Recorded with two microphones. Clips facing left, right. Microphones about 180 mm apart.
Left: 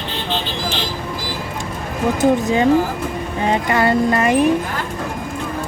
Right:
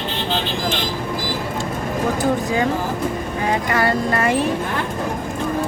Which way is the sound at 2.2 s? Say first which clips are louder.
Left 7 dB; 25° left (ahead or behind).